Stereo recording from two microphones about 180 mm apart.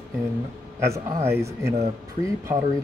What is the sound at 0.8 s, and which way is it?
Speech, 15° right (ahead or behind).